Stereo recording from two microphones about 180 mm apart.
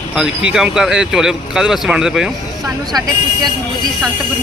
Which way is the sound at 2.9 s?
20° right (ahead or behind).